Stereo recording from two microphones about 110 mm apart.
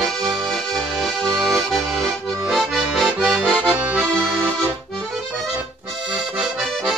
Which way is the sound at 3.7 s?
15° right (ahead or behind).